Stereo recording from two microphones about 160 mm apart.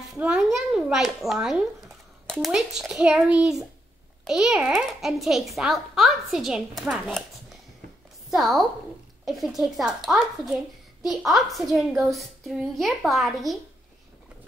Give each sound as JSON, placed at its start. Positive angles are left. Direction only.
{"t": 0.1, "sound": "a child's voice", "side_deg": -5}
{"t": 8.3, "sound": "a child's voice", "side_deg": 0}
{"t": 11.2, "sound": "a child's voice", "side_deg": 0}